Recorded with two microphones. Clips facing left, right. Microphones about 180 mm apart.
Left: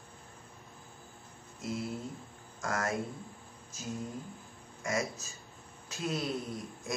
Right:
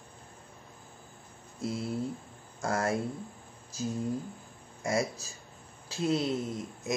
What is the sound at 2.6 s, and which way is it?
Speech, 30° right (ahead or behind).